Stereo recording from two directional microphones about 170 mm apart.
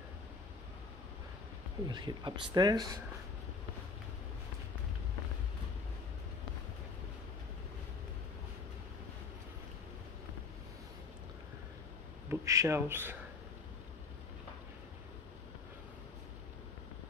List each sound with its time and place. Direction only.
1.9 s speech: 25° right (ahead or behind)
12.3 s speech: 15° right (ahead or behind)